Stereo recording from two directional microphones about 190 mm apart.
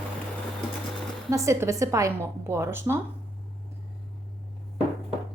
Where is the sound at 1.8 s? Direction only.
15° right (ahead or behind).